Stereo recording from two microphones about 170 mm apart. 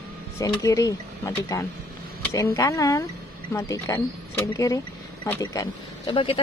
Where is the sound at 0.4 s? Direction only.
20° left (ahead or behind).